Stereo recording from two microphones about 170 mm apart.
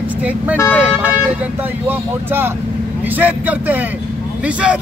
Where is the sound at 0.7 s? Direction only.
10° right (ahead or behind).